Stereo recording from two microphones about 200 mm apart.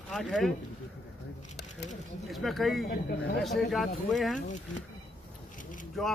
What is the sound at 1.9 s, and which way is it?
Speech, centre (ahead or behind).